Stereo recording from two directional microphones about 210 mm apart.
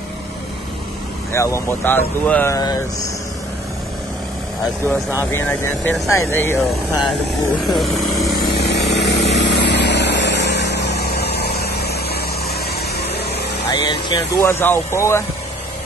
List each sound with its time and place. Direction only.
1.3 s speech: 15° left (ahead or behind)
5.3 s speech: 10° left (ahead or behind)
7.6 s speech: centre (ahead or behind)
8.3 s vehicle: 50° left (ahead or behind)
13.0 s a sound: 50° left (ahead or behind)
13.7 s speech: 20° left (ahead or behind)